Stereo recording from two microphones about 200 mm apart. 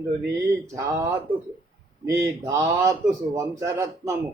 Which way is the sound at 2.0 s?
15° right (ahead or behind).